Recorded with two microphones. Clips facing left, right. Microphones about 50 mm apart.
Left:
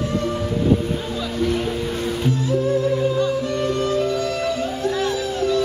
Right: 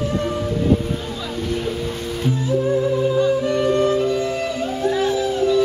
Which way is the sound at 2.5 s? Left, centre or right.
Centre.